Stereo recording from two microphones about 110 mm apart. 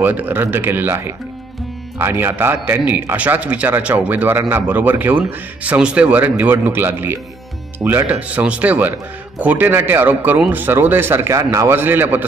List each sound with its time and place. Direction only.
0.0 s a man's voice: 15° right (ahead or behind)